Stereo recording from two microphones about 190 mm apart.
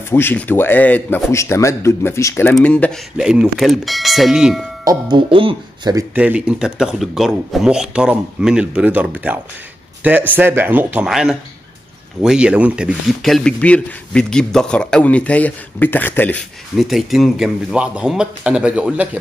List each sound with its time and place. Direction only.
0.1 s speech: 10° left (ahead or behind)
4.8 s speech: 25° right (ahead or behind)
6.1 s speech: 5° right (ahead or behind)